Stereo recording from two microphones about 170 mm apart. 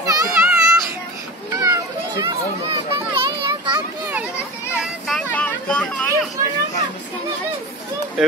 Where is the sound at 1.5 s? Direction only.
20° right (ahead or behind).